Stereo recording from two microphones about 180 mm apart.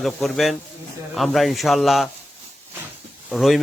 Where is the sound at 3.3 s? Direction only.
Centre (ahead or behind).